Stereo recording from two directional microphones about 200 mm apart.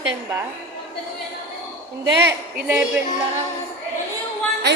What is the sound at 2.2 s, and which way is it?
Speech, 10° right (ahead or behind).